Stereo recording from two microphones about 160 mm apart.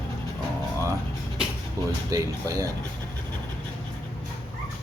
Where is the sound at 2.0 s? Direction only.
20° right (ahead or behind).